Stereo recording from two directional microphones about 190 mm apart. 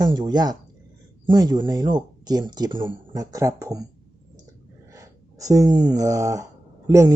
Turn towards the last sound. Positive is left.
turn(degrees=-15)  # may be behind; listen again after turning